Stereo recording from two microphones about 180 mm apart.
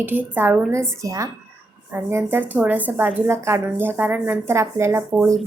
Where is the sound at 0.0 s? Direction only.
10° right (ahead or behind).